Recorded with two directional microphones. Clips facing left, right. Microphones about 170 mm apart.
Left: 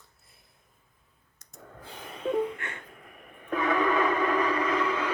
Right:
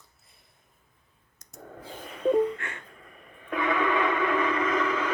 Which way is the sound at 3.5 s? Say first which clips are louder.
Left 1 dB; 40° left (ahead or behind).